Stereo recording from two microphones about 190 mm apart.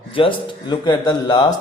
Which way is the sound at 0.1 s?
25° left (ahead or behind).